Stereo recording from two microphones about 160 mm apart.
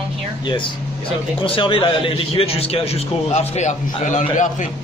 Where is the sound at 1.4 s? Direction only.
35° left (ahead or behind); by 4.7 s 50° left (ahead or behind).